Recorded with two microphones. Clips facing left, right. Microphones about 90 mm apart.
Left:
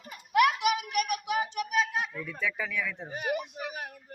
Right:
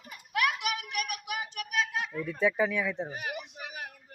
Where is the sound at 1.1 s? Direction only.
30° left (ahead or behind).